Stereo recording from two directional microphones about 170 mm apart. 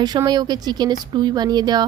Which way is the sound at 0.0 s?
25° right (ahead or behind).